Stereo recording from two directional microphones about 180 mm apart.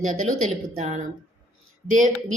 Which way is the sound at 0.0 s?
45° right (ahead or behind).